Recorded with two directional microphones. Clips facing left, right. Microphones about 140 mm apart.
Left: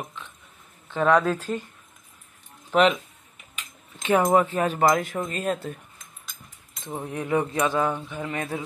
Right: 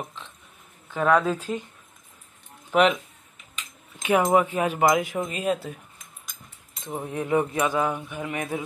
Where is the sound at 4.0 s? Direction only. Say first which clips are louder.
Even; 10° right (ahead or behind).